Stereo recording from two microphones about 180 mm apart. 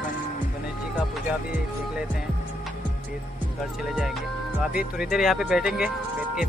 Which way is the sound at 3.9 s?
Centre (ahead or behind).